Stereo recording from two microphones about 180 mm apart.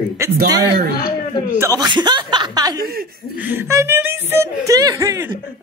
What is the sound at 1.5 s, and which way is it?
Speech, 15° right (ahead or behind).